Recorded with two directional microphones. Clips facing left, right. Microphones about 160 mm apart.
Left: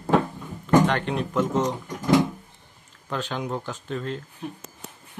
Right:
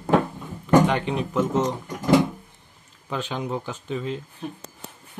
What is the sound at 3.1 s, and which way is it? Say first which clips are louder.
Speech: right 1 dB; 5° right (ahead or behind).